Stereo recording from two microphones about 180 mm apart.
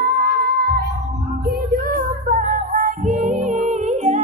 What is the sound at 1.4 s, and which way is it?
Music, 50° right (ahead or behind).